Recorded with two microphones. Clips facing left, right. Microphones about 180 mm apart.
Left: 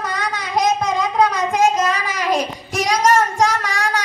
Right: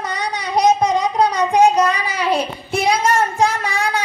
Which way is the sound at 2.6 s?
40° left (ahead or behind).